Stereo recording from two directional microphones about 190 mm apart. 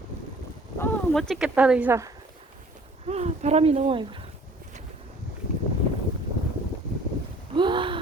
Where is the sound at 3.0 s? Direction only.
35° right (ahead or behind).